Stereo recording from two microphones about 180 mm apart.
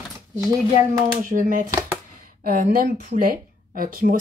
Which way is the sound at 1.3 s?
45° right (ahead or behind).